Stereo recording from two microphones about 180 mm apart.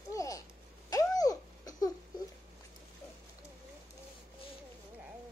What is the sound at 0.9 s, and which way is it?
Babbling, 20° left (ahead or behind).